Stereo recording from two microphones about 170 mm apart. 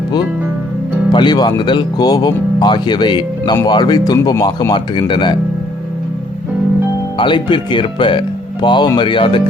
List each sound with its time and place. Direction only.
1.1 s speech: 25° left (ahead or behind)
7.2 s speech: 30° left (ahead or behind)